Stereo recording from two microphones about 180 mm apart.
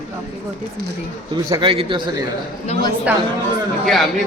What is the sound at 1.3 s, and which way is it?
Speech, 25° right (ahead or behind).